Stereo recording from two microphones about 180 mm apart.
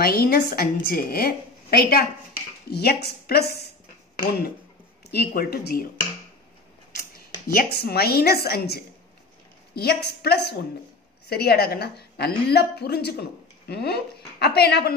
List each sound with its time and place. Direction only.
0.0 s a woman's voice: 60° left (ahead or behind)
5.1 s a woman's voice: 60° left (ahead or behind)
7.0 s a woman's voice: 55° left (ahead or behind)